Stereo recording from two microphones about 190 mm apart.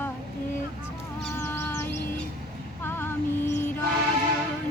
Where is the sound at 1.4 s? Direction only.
10° left (ahead or behind).